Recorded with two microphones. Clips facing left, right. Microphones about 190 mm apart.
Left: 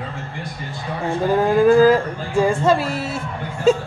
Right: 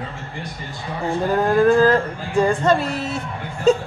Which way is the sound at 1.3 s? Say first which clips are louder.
Left 2 dB; 5° left (ahead or behind).